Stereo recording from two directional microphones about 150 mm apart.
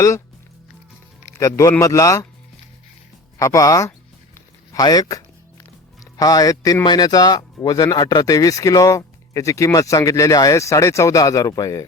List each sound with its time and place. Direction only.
1.3 s speech: 20° left (ahead or behind)
3.3 s speech: 20° left (ahead or behind)